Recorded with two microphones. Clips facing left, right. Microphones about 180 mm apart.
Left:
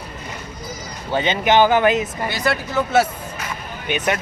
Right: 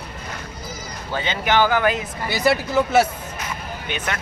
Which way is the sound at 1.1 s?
20° left (ahead or behind).